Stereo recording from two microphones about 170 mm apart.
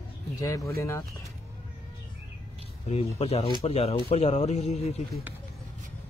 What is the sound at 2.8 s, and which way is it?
Speech, 40° left (ahead or behind).